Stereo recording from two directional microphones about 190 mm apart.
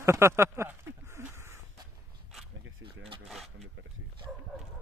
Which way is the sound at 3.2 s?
Centre (ahead or behind).